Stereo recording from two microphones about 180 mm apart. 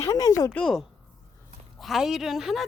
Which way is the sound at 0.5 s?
Centre (ahead or behind).